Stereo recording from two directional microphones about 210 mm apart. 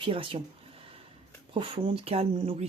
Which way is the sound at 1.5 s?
25° right (ahead or behind).